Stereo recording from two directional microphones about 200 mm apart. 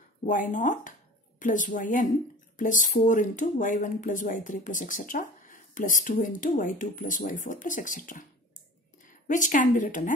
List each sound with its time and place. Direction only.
0.3 s a woman's voice: 40° left (ahead or behind)